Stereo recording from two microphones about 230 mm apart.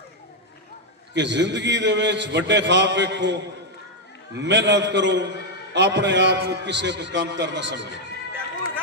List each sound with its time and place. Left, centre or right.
1.1 s a man's voice: right